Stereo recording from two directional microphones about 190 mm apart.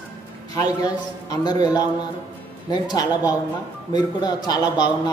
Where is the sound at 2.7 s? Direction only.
20° left (ahead or behind).